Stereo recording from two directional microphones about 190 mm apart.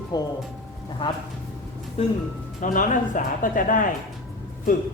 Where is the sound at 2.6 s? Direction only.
40° left (ahead or behind).